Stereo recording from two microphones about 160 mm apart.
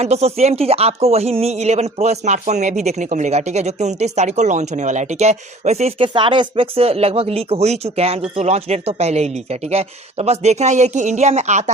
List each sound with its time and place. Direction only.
0.0 s speech: 40° right (ahead or behind)